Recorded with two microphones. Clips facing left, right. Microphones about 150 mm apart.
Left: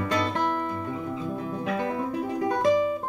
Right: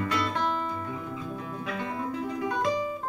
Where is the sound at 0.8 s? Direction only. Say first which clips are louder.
Left 4 dB; 25° left (ahead or behind).